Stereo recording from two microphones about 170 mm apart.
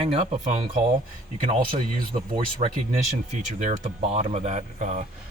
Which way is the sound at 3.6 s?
40° right (ahead or behind).